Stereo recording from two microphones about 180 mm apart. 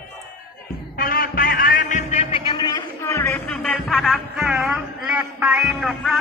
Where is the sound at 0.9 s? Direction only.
55° left (ahead or behind).